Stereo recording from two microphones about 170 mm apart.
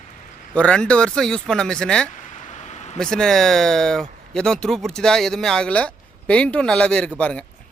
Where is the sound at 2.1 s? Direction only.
50° left (ahead or behind).